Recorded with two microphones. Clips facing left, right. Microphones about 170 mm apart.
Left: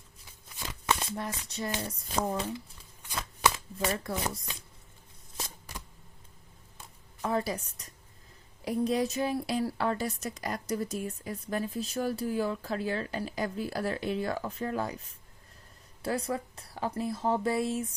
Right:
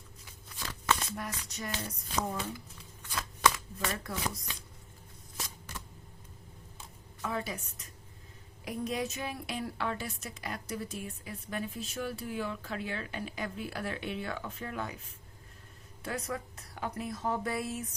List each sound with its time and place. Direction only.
0.6 s shuffling cards: 15° left (ahead or behind)
1.0 s a woman's voice: 30° left (ahead or behind)
3.0 s shuffling cards: 10° left (ahead or behind)
3.8 s a woman's voice: 30° left (ahead or behind)
7.2 s a woman's voice: 35° left (ahead or behind)
16.0 s a woman's voice: 30° left (ahead or behind)